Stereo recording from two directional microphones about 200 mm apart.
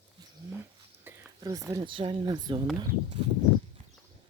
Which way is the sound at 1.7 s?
20° right (ahead or behind).